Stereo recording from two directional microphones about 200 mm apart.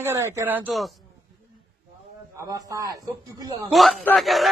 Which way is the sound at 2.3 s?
15° right (ahead or behind).